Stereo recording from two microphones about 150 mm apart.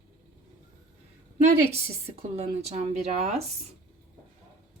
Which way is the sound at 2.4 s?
50° right (ahead or behind).